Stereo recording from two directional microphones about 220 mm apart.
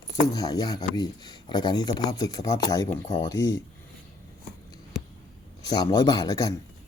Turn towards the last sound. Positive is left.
turn(degrees=15)  # may be behind; listen again after turning